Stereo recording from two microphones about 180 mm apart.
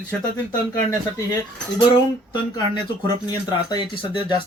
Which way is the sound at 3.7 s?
30° left (ahead or behind).